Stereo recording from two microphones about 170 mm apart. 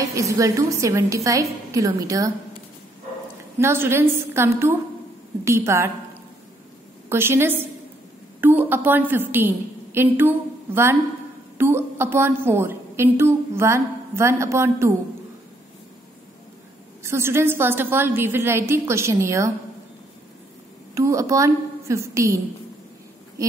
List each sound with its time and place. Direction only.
0.0 s a woman's voice: 20° right (ahead or behind)
3.5 s a woman's voice: 15° right (ahead or behind)
7.1 s a woman's voice: 15° right (ahead or behind)
17.0 s a woman's voice: 15° right (ahead or behind)
20.9 s a woman's voice: 20° right (ahead or behind)